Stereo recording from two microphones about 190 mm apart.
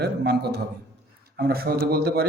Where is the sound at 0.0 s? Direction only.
60° right (ahead or behind).